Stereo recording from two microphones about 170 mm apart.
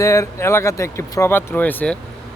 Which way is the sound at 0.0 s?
20° left (ahead or behind).